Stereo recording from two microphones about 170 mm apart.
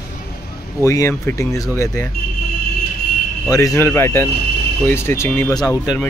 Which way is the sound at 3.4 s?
20° left (ahead or behind).